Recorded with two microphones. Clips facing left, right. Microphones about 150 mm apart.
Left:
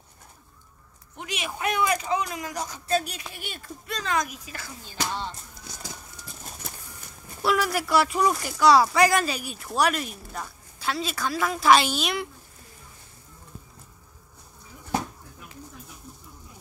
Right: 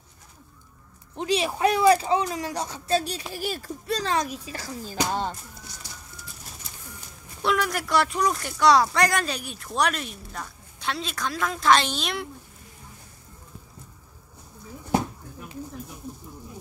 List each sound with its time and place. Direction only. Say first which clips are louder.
1.1 s speech: right 9 dB; 30° right (ahead or behind)
7.4 s speech: left 1 dB; 5° left (ahead or behind)